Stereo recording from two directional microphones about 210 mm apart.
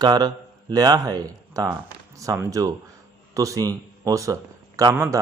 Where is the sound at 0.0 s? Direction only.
20° right (ahead or behind).